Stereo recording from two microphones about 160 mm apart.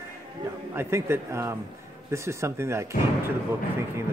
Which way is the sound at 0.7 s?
15° right (ahead or behind).